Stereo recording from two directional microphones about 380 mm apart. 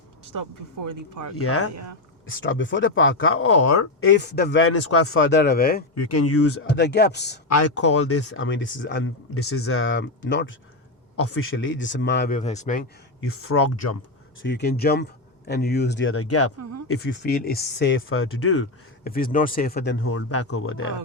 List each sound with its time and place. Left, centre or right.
0.3 s speech: right
1.4 s speech: left
4.0 s speech: left
5.9 s speech: left
7.4 s speech: left; by 12.8 s centre
13.2 s speech: left
14.4 s speech: left
19.0 s speech: left